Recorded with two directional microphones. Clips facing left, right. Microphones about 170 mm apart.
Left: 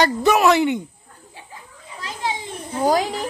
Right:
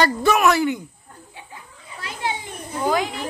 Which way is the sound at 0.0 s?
20° left (ahead or behind).